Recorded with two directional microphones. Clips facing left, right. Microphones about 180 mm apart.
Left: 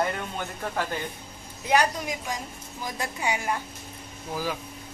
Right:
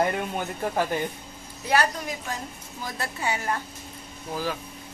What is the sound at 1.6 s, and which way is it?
Speech, 15° left (ahead or behind).